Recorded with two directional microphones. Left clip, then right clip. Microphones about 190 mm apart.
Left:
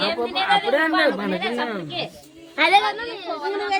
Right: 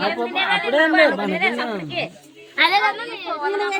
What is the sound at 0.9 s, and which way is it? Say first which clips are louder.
Speech: right 4 dB; 70° right (ahead or behind).